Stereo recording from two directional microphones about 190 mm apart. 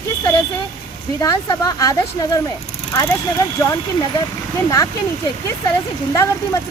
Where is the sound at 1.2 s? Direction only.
20° left (ahead or behind).